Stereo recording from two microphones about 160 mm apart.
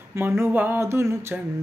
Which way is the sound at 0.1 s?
15° right (ahead or behind).